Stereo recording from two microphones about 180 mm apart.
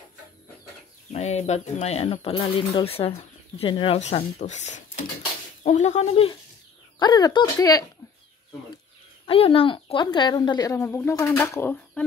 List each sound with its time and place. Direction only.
1.1 s speech: 40° left (ahead or behind)
7.0 s speech: 20° left (ahead or behind)
9.2 s speech: 30° left (ahead or behind); by 11.8 s 15° left (ahead or behind)